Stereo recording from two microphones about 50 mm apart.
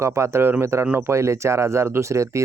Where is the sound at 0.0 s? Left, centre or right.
Right.